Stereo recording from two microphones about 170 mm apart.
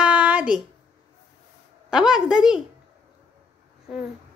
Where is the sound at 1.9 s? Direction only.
5° right (ahead or behind).